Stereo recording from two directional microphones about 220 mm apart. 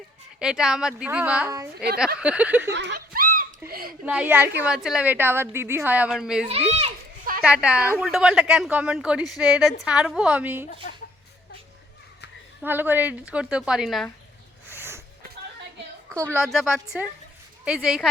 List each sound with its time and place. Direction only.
0.3 s speech: 5° right (ahead or behind)
2.6 s snicker: 55° right (ahead or behind)
3.7 s a sound: 40° right (ahead or behind)
4.0 s a woman's voice: 5° right (ahead or behind)
6.5 s a child's voice: 30° right (ahead or behind)
7.4 s speech: 5° right (ahead or behind)
12.6 s speech: 10° right (ahead or behind)
14.7 s a sound: 10° right (ahead or behind)
16.0 s a woman's voice: 15° right (ahead or behind)
16.4 s speech: centre (ahead or behind)